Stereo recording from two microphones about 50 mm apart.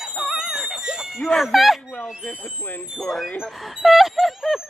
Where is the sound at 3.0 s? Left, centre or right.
Centre.